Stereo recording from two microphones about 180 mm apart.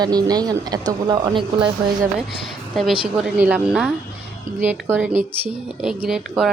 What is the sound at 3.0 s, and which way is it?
A woman's voice, 5° right (ahead or behind).